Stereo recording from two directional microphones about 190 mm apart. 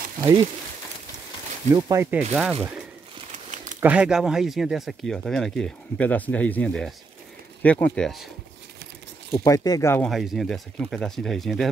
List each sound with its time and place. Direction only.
0.2 s speech: 20° right (ahead or behind)
1.7 s speech: 15° right (ahead or behind)
3.3 s crumpling: 40° right (ahead or behind)
3.8 s speech: 5° right (ahead or behind)
9.3 s speech: 20° left (ahead or behind)
10.0 s speech: centre (ahead or behind)